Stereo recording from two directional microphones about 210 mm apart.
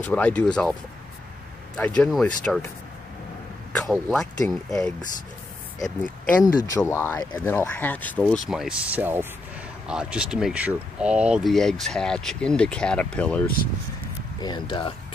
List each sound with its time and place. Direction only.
0.1 s speech: 5° left (ahead or behind)
2.0 s speech: 5° left (ahead or behind)
3.9 s speech: centre (ahead or behind)
5.9 s speech: 15° left (ahead or behind)
14.4 s speech: 20° left (ahead or behind)